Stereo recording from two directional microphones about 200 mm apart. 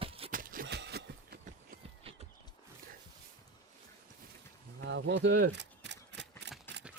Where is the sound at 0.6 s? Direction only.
55° right (ahead or behind).